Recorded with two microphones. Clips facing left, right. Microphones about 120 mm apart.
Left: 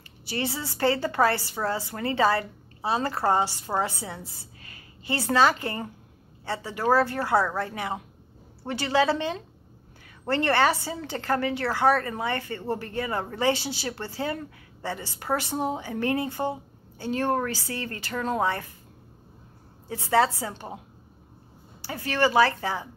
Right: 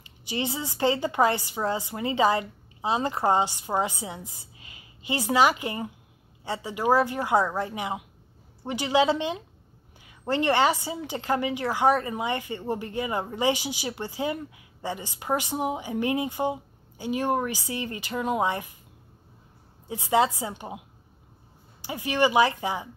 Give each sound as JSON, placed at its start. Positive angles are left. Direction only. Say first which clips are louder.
{"t": 0.2, "sound": "a woman's voice", "louder": "even", "side_deg": -15}
{"t": 19.9, "sound": "a woman's voice", "louder": "even", "side_deg": -15}
{"t": 21.8, "sound": "a woman's voice", "louder": "right 1 dB", "side_deg": -15}